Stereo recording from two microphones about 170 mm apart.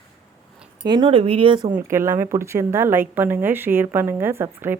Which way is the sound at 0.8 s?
25° right (ahead or behind).